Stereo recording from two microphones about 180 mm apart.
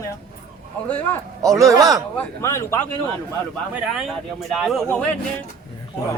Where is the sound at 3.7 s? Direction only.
Centre (ahead or behind).